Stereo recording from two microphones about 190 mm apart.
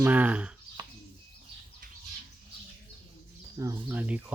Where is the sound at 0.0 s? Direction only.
10° right (ahead or behind).